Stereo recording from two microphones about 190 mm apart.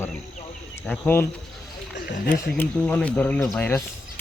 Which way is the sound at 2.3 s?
10° left (ahead or behind).